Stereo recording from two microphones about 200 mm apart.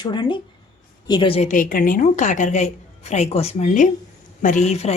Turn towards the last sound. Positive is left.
turn(degrees=30)  # may be behind; listen again after turning